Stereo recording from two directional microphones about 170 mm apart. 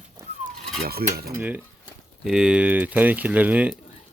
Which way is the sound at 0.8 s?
65° right (ahead or behind).